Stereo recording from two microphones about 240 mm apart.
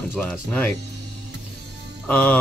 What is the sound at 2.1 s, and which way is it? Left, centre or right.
Music, centre.